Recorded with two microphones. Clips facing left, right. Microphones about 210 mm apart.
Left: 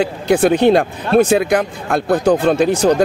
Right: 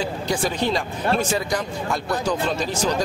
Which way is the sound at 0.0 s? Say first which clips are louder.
Left 10 dB; 60° left (ahead or behind).